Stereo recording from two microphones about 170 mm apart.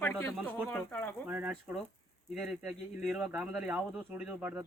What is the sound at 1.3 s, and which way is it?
Speech, 10° right (ahead or behind).